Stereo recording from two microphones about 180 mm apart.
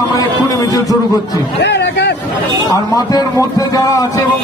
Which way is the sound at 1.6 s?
70° left (ahead or behind).